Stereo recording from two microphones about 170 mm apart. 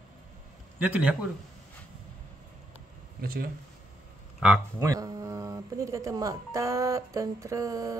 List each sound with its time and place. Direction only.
0.7 s a man's voice: 10° right (ahead or behind)
3.2 s speech: 60° right (ahead or behind)
4.4 s speech: 5° right (ahead or behind)
4.8 s speech: 20° right (ahead or behind)